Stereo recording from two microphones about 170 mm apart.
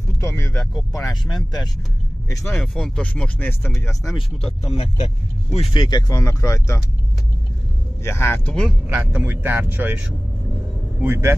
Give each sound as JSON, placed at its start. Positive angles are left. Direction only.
{"t": 0.6, "sound": "speech", "side_deg": 0}
{"t": 2.2, "sound": "speech", "side_deg": 15}
{"t": 2.6, "sound": "speech", "side_deg": 5}
{"t": 4.4, "sound": "speech", "side_deg": 35}
{"t": 8.0, "sound": "speech", "side_deg": 15}
{"t": 8.8, "sound": "speech", "side_deg": -10}